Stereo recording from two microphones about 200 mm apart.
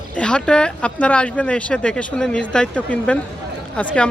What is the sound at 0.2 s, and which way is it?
Speech, 5° left (ahead or behind).